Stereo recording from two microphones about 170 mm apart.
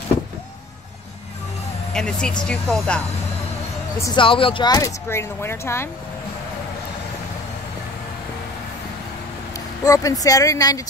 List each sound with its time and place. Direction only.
2.0 s speech: 5° left (ahead or behind)
4.0 s speech: 30° left (ahead or behind)
9.8 s speech: 20° left (ahead or behind)